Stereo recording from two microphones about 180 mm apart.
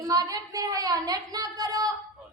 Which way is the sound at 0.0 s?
20° right (ahead or behind).